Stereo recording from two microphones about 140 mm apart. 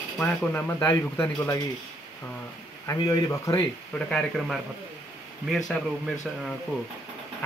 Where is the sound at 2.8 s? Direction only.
20° left (ahead or behind).